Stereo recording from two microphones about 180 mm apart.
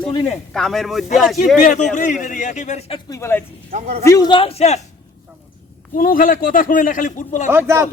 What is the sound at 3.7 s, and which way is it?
Speech, 40° right (ahead or behind).